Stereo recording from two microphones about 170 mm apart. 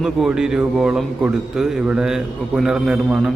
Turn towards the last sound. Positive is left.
turn(degrees=-5)  # may be behind; listen again after turning